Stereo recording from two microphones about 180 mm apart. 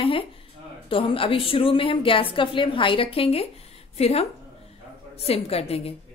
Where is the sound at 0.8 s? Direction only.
30° left (ahead or behind).